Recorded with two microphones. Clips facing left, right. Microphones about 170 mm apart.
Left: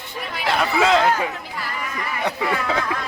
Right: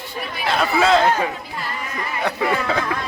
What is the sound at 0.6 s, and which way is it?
Speech, 15° left (ahead or behind).